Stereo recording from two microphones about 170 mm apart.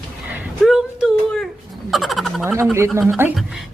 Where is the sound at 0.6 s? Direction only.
Centre (ahead or behind).